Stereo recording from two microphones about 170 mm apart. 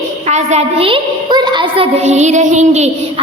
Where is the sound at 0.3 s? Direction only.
40° right (ahead or behind).